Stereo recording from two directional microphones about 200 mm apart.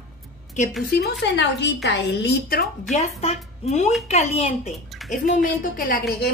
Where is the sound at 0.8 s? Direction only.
55° left (ahead or behind).